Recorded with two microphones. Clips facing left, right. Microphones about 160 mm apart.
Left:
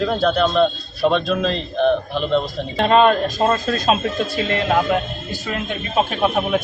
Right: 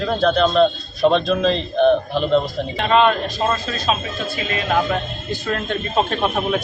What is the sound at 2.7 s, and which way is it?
A man's voice, 45° left (ahead or behind).